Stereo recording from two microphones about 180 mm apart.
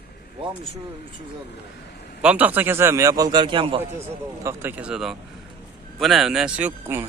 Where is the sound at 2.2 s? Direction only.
10° right (ahead or behind); by 3.8 s 30° right (ahead or behind).